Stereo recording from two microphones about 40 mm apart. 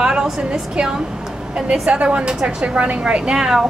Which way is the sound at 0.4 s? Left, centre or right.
Right.